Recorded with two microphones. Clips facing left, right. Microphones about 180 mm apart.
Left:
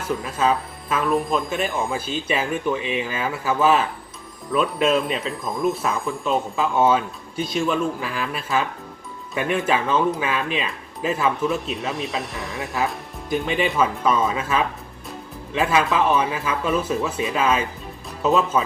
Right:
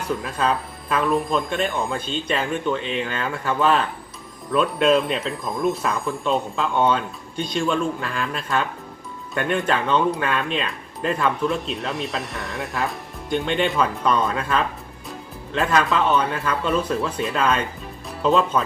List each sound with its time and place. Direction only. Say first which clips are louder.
0.2 s speech: left 2 dB; centre (ahead or behind)